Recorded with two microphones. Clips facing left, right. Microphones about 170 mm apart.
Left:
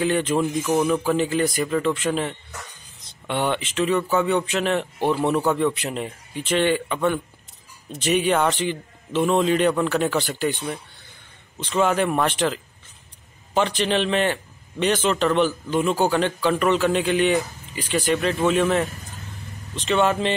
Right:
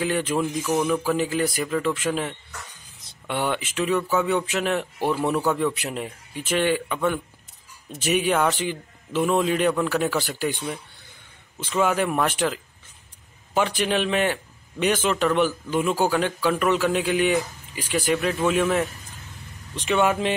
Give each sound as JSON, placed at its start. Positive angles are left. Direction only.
{"t": 0.0, "sound": "a man's voice", "side_deg": -5}
{"t": 0.4, "sound": "a man's voice", "side_deg": 5}
{"t": 4.9, "sound": "speech", "side_deg": 20}
{"t": 5.8, "sound": "a man's voice", "side_deg": -10}